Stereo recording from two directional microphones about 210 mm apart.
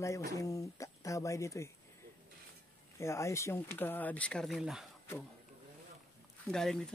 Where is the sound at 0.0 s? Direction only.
15° left (ahead or behind).